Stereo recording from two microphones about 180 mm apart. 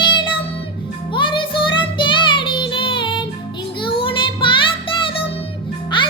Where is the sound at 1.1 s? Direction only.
25° left (ahead or behind).